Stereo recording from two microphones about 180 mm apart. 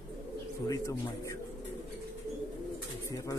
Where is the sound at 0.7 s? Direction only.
15° left (ahead or behind).